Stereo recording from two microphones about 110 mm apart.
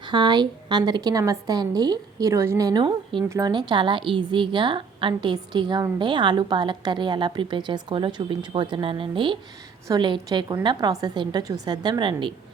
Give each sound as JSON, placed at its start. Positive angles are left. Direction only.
{"t": 0.1, "sound": "a woman's voice", "side_deg": -40}
{"t": 2.8, "sound": "a woman's voice", "side_deg": -50}
{"t": 3.2, "sound": "speech", "side_deg": -30}
{"t": 3.5, "sound": "a woman's voice", "side_deg": -45}